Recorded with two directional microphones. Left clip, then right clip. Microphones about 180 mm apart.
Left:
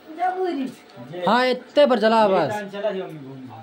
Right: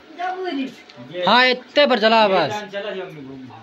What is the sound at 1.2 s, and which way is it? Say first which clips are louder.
A man's voice: right 4 dB; 15° left (ahead or behind).